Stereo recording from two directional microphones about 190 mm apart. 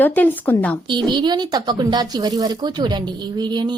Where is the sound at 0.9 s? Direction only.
25° right (ahead or behind).